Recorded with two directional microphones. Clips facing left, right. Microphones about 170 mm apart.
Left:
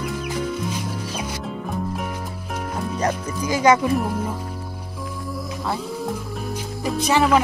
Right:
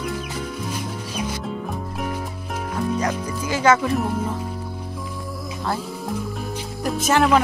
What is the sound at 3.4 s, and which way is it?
Speech, 15° left (ahead or behind).